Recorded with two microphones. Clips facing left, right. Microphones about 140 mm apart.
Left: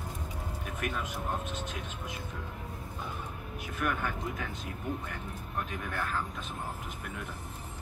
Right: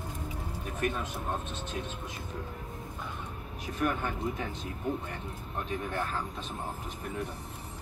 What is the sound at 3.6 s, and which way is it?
Speech, 30° right (ahead or behind).